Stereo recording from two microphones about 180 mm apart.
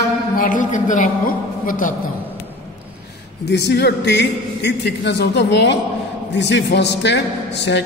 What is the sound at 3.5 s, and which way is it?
A woman's voice, 70° left (ahead or behind).